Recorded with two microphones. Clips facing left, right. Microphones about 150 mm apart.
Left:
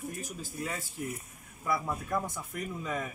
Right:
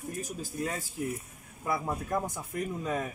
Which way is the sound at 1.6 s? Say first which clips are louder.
Right 1 dB; 40° right (ahead or behind).